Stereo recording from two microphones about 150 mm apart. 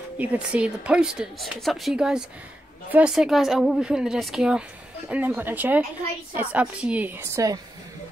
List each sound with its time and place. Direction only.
0.2 s a woman's voice: 10° right (ahead or behind)